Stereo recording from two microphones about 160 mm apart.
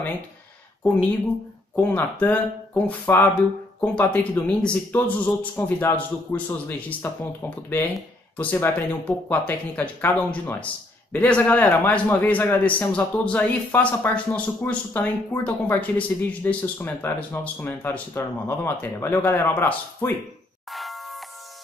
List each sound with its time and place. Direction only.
1.8 s speech: 10° left (ahead or behind)
20.7 s doorbell: centre (ahead or behind)